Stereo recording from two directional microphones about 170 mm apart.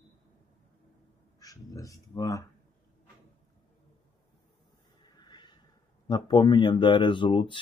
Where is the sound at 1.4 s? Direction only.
20° left (ahead or behind).